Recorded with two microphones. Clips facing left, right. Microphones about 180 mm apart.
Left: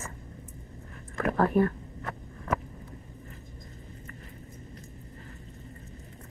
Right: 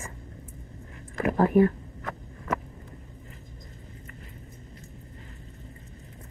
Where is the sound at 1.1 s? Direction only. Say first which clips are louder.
Right 3 dB; 15° right (ahead or behind).